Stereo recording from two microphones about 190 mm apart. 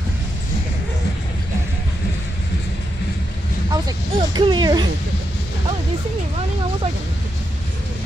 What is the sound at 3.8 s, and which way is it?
Speech, 25° right (ahead or behind).